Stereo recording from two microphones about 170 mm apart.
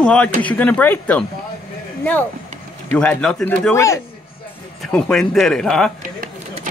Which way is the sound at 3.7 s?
20° left (ahead or behind).